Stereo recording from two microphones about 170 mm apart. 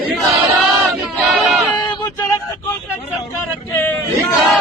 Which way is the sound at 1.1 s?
Centre (ahead or behind).